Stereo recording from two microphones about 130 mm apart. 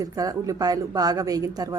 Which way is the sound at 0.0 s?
25° right (ahead or behind).